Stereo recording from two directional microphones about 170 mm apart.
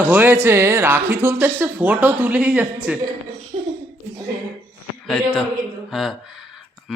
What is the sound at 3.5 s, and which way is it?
Laughter, 40° right (ahead or behind).